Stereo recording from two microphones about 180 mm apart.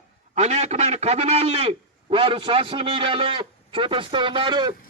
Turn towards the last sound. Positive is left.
turn(degrees=-25)  # may be behind; listen again after turning